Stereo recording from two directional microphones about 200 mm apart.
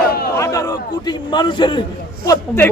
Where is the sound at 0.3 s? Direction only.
15° left (ahead or behind).